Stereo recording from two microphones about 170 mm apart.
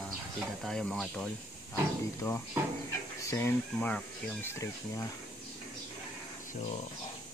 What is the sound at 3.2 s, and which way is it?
Speech, 15° left (ahead or behind).